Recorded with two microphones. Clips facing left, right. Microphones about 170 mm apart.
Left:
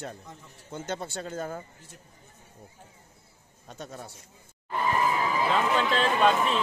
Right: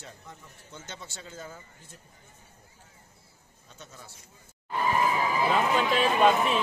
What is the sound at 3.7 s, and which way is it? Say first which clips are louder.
Speech: left 9 dB; 60° left (ahead or behind).